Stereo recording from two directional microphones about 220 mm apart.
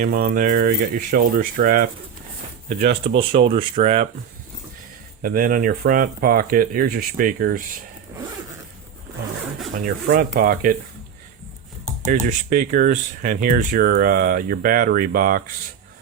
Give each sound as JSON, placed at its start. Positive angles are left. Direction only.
{"t": 0.0, "sound": "speech", "side_deg": -40}
{"t": 5.2, "sound": "speech", "side_deg": -40}
{"t": 9.7, "sound": "speech", "side_deg": -40}
{"t": 12.0, "sound": "speech", "side_deg": -35}